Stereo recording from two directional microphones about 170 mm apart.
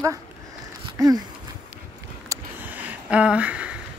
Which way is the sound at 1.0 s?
20° right (ahead or behind).